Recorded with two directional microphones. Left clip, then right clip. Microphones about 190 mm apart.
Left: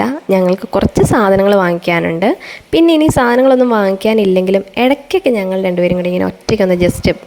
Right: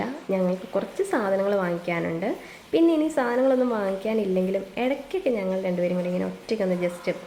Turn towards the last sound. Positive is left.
turn(degrees=50)  # may be behind; listen again after turning